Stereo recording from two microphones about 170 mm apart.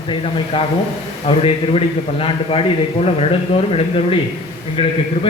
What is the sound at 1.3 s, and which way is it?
A man's voice, 35° left (ahead or behind).